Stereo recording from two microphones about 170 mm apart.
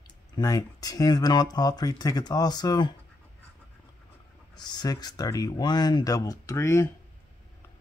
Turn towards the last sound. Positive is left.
turn(degrees=15)  # may be behind; listen again after turning